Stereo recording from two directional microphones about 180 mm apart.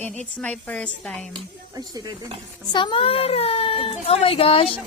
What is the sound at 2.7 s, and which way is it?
Speech, 25° left (ahead or behind).